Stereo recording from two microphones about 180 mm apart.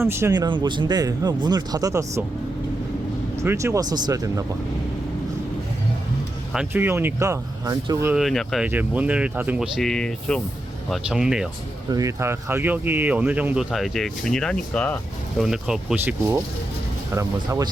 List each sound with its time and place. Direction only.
0.0 s speech: 15° right (ahead or behind)
3.3 s speech: 15° right (ahead or behind)
6.5 s speech: 5° right (ahead or behind)
8.1 s speech: centre (ahead or behind)
8.6 s speech: 10° right (ahead or behind)
11.9 s speech: 20° right (ahead or behind)
17.1 s speech: 15° right (ahead or behind)